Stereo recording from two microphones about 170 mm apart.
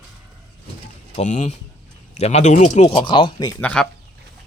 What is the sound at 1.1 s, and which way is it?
Speech, 45° left (ahead or behind).